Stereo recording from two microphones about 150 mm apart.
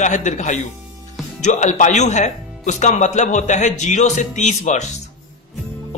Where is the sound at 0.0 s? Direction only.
55° left (ahead or behind).